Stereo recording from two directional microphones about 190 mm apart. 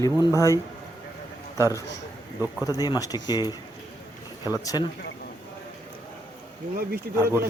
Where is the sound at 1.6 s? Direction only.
15° left (ahead or behind).